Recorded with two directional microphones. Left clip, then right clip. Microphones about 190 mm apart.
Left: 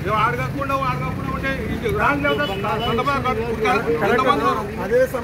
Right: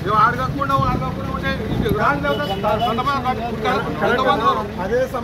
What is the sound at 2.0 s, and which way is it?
Speech, 15° left (ahead or behind).